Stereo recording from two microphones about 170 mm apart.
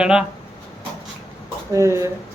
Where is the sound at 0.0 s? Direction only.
5° right (ahead or behind).